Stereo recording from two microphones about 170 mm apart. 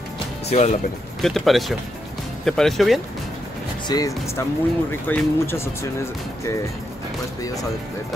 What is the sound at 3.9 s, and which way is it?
Speech, 20° left (ahead or behind).